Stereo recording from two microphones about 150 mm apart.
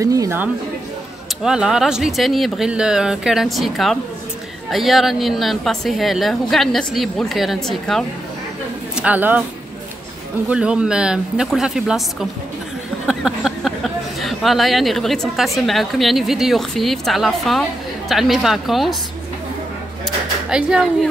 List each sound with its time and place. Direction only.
0.0 s speech: 20° right (ahead or behind)
1.4 s a woman's voice: 5° right (ahead or behind)
8.9 s a woman's voice: 10° right (ahead or behind)
10.5 s a woman's voice: 5° right (ahead or behind)
20.4 s a woman's voice: 5° right (ahead or behind)